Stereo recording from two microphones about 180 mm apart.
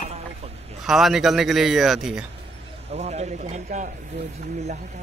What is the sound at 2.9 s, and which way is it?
Speech, 35° right (ahead or behind).